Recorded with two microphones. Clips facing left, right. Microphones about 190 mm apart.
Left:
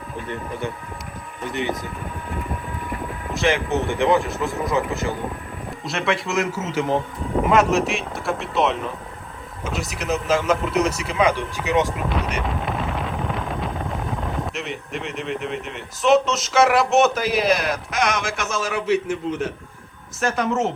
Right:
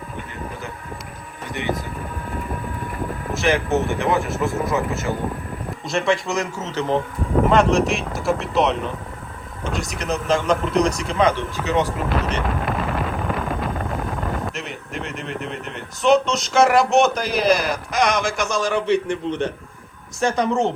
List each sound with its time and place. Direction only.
3.3 s speech: 20° left (ahead or behind)
5.8 s a man's voice: centre (ahead or behind)
12.0 s vehicle: 5° right (ahead or behind)
20.1 s a man's voice: centre (ahead or behind)